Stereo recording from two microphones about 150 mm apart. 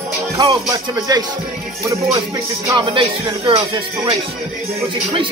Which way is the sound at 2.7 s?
30° right (ahead or behind).